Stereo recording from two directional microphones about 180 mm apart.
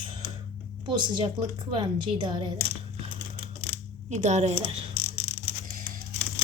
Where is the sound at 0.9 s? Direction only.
25° right (ahead or behind).